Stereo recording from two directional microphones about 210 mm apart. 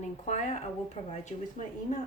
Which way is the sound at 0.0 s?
35° left (ahead or behind).